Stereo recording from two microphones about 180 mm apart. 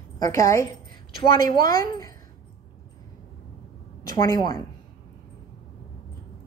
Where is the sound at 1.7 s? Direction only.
20° left (ahead or behind).